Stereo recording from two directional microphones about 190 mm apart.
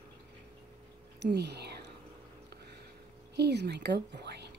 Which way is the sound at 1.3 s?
60° right (ahead or behind).